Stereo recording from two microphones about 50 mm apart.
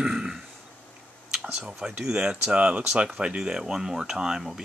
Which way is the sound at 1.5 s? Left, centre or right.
Centre.